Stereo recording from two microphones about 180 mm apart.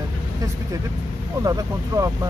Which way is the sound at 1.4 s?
20° right (ahead or behind).